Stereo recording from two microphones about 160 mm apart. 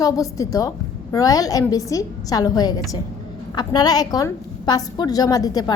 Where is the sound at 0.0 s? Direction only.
20° left (ahead or behind).